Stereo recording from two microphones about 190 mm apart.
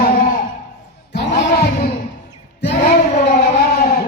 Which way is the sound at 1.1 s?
60° left (ahead or behind).